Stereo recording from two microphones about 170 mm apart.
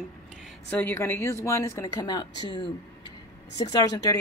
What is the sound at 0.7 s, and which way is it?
Speech, 10° left (ahead or behind).